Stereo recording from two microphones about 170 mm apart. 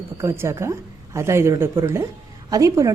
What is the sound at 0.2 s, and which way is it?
A woman's voice, 15° right (ahead or behind).